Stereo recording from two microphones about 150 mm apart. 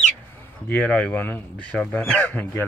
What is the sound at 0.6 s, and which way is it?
Speech, 10° left (ahead or behind).